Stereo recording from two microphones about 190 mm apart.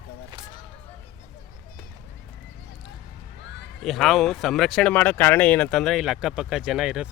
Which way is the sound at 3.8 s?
Centre (ahead or behind).